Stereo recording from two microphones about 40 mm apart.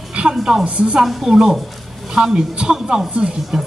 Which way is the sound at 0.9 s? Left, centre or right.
Centre.